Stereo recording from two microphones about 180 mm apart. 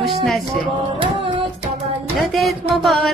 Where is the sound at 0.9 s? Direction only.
30° right (ahead or behind).